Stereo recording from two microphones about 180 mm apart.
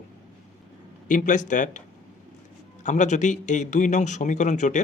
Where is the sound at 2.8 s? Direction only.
40° left (ahead or behind).